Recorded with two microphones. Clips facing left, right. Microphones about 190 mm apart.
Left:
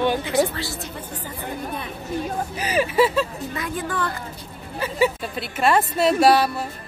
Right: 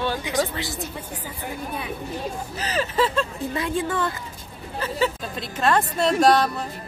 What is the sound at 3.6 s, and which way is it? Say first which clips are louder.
Speech: right 2 dB; 25° right (ahead or behind).